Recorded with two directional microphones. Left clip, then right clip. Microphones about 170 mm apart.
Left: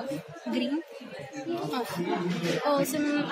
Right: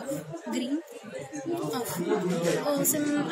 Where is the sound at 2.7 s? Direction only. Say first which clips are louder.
Left 1 dB; 30° left (ahead or behind).